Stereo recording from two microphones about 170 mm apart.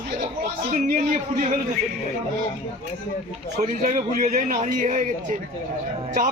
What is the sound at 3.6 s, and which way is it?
A man's voice, 45° right (ahead or behind).